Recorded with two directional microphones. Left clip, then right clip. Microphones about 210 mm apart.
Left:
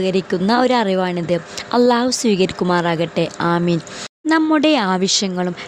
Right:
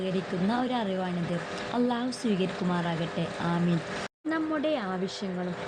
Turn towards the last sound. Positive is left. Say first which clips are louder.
# left 15 dB
turn(degrees=55)  # may be behind; listen again after turning